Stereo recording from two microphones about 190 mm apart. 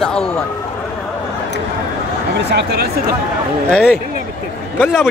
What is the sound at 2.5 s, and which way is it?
Speech, 55° right (ahead or behind).